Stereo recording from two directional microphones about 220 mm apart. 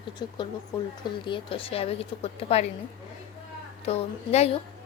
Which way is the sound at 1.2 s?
25° left (ahead or behind).